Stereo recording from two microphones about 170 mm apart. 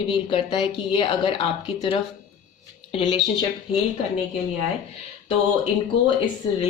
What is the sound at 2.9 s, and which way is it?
Speech, 30° left (ahead or behind).